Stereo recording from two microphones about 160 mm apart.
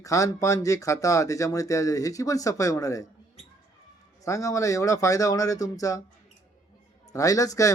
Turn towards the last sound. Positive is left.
turn(degrees=20)  # may be behind; listen again after turning